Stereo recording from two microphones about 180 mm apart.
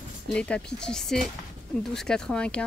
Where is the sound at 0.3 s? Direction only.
5° left (ahead or behind).